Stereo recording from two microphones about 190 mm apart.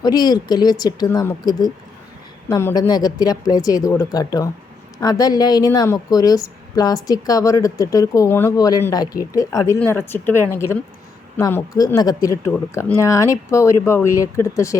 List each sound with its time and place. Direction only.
0.0 s a woman's voice: 20° left (ahead or behind)